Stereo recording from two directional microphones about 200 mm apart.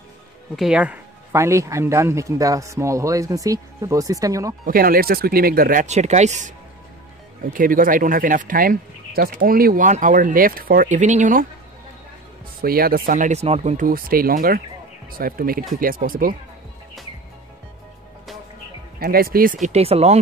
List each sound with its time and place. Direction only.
0.6 s speech: 5° right (ahead or behind)
4.6 s speech: 45° right (ahead or behind)
7.5 s speech: 45° right (ahead or behind)
12.6 s speech: 45° right (ahead or behind)
18.9 s speech: 45° right (ahead or behind); by 20.2 s 30° right (ahead or behind)